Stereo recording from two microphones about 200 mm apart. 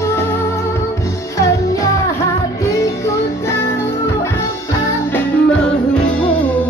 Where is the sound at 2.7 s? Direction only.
15° left (ahead or behind).